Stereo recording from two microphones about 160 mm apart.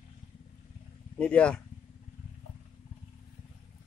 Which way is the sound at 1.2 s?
5° left (ahead or behind).